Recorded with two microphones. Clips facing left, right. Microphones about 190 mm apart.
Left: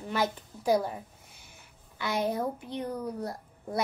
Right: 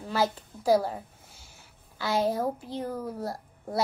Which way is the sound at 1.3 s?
20° left (ahead or behind).